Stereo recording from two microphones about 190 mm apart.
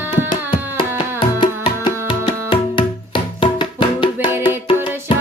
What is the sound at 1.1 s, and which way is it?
Music, 25° left (ahead or behind).